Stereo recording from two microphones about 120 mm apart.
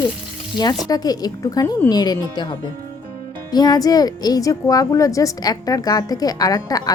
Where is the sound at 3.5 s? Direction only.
35° left (ahead or behind).